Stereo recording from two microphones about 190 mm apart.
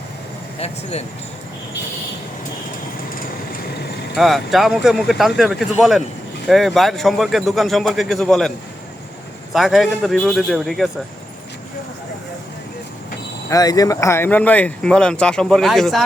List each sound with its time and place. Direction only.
0.6 s speech: 35° left (ahead or behind)
4.1 s speech: centre (ahead or behind)
13.5 s speech: 20° left (ahead or behind); by 16.0 s centre (ahead or behind)